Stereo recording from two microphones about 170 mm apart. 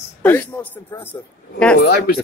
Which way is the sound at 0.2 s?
10° left (ahead or behind).